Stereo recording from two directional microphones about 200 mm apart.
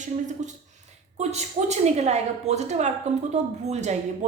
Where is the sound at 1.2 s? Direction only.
35° right (ahead or behind).